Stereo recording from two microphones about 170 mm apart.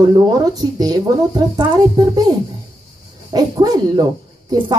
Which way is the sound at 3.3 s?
25° right (ahead or behind).